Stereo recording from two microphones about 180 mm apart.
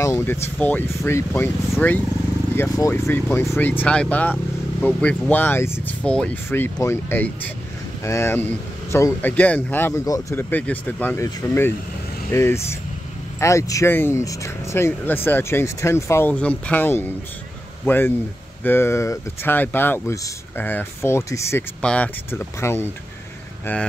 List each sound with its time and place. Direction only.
0.0 s speech: 15° left (ahead or behind)
12.3 s speech: 15° left (ahead or behind)